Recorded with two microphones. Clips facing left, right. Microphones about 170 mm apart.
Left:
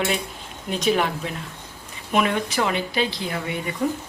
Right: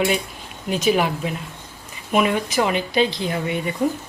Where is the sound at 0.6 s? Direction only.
10° right (ahead or behind).